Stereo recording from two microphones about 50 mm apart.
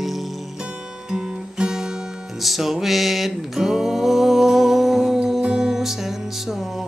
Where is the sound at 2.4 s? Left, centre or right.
Centre.